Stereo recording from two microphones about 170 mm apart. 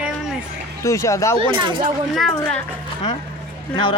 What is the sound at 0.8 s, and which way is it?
Speech, 15° left (ahead or behind).